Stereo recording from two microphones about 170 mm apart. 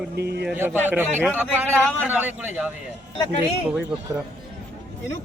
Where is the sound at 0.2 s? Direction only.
75° right (ahead or behind).